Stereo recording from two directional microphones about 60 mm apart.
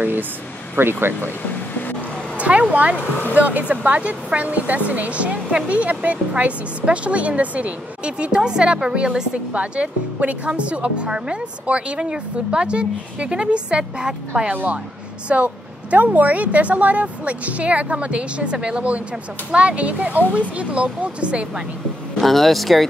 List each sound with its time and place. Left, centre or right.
0.7 s speech: right
2.3 s a sound: right
2.7 s a woman's voice: right
3.0 s speech: left
3.3 s a woman's voice: right
14.5 s a woman's voice: right
22.2 s speech: centre